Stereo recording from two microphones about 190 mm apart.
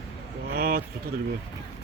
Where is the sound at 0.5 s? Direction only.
55° right (ahead or behind).